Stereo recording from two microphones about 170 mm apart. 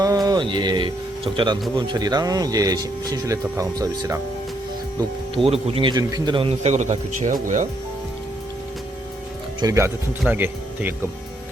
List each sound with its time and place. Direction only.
0.0 s speech: 20° right (ahead or behind)
4.9 s speech: 30° right (ahead or behind); by 7.7 s 50° right (ahead or behind)
9.6 s speech: 20° right (ahead or behind)